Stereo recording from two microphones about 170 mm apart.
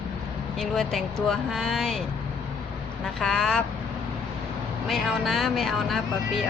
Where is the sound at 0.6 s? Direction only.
5° left (ahead or behind).